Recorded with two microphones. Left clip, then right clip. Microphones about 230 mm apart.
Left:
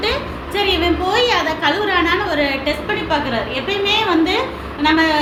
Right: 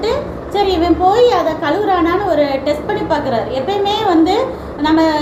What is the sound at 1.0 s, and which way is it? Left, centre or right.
A woman's voice, left.